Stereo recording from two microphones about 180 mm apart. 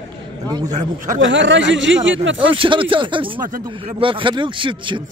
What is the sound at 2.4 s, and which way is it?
Speech, 30° right (ahead or behind).